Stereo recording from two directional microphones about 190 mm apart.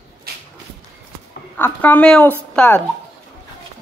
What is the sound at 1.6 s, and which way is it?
Speech, 10° left (ahead or behind).